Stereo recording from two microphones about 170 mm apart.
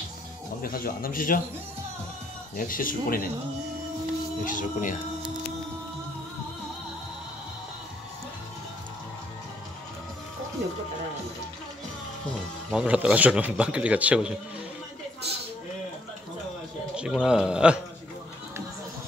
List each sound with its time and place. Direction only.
0.6 s a man's voice: 60° left (ahead or behind)
2.5 s a man's voice: 55° left (ahead or behind)
4.5 s speech: 50° left (ahead or behind)
12.7 s speech: 5° right (ahead or behind)
16.9 s a man's voice: 5° right (ahead or behind)